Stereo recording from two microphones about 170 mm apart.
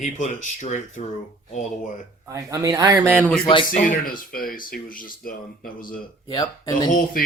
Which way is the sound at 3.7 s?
55° left (ahead or behind).